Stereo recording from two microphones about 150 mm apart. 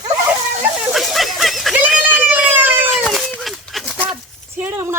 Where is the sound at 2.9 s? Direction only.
Centre (ahead or behind).